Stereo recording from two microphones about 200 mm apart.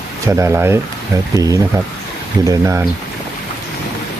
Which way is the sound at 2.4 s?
15° right (ahead or behind).